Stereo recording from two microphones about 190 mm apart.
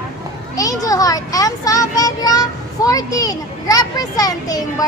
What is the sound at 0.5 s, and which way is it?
A child's voice, 20° left (ahead or behind).